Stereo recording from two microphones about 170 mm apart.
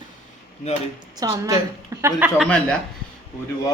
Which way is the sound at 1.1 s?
20° right (ahead or behind).